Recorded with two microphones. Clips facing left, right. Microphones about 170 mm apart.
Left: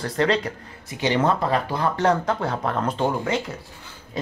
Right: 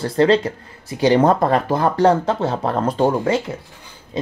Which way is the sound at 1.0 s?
40° right (ahead or behind).